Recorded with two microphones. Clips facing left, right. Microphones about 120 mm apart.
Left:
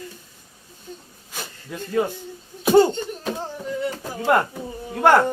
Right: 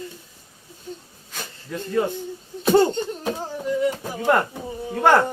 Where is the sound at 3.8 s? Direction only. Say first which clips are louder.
Right 3 dB; 15° right (ahead or behind).